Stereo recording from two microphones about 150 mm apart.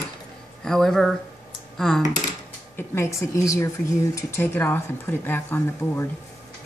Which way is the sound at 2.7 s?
15° left (ahead or behind).